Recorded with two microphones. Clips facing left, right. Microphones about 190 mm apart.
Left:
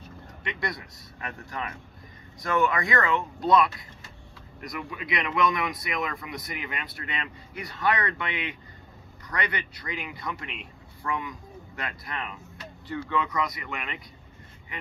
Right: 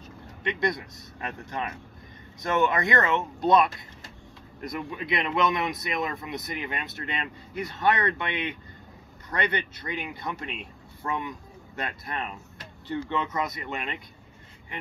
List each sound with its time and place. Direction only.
0.4 s speech: 20° right (ahead or behind)